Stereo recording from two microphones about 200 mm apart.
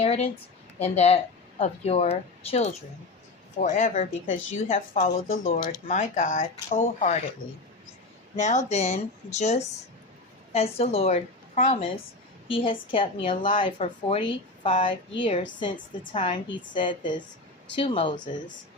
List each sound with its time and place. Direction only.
0.8 s speech: 30° left (ahead or behind)
4.3 s a woman's voice: 80° left
4.7 s speech: 35° left (ahead or behind)
8.4 s a woman's voice: 35° left (ahead or behind)